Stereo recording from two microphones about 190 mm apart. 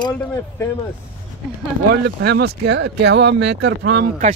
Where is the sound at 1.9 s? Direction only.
55° right (ahead or behind).